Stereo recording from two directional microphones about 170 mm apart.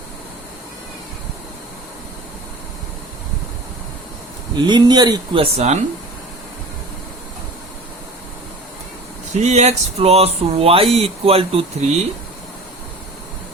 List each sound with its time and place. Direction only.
4.5 s speech: 25° right (ahead or behind)
5.4 s speech: 40° right (ahead or behind)
9.3 s speech: 40° right (ahead or behind)